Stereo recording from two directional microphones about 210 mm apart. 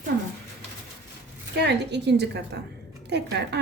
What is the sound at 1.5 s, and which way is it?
A woman's voice, 55° right (ahead or behind).